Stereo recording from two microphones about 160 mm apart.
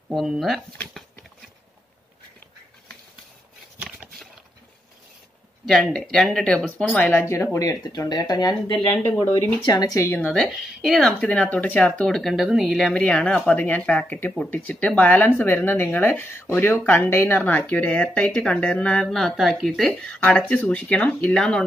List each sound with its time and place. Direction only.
0.1 s speech: centre (ahead or behind)
3.8 s a sound: 5° right (ahead or behind)
5.7 s speech: centre (ahead or behind); by 8.5 s 25° left (ahead or behind)
9.6 s speech: 25° left (ahead or behind)
10.3 s speech: centre (ahead or behind)